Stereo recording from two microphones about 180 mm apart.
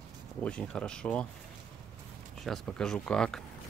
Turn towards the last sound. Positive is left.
turn(degrees=5)  # may be behind; listen again after turning